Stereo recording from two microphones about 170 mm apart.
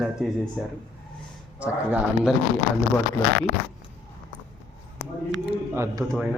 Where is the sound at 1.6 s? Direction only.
5° right (ahead or behind).